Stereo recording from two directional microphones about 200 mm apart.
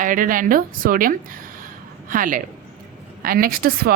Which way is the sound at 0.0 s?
40° right (ahead or behind).